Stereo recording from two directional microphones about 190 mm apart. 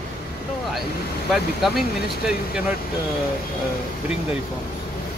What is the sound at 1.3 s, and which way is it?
Speech, centre (ahead or behind).